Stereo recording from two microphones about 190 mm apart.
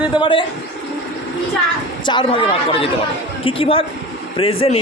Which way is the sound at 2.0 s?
25° left (ahead or behind).